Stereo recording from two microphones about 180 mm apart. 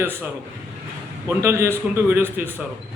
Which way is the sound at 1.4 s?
15° right (ahead or behind).